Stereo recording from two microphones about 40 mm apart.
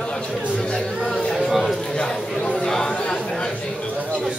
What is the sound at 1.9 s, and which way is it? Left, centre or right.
Chatter, centre.